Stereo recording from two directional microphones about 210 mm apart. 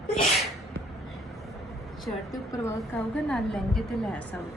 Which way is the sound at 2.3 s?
15° left (ahead or behind).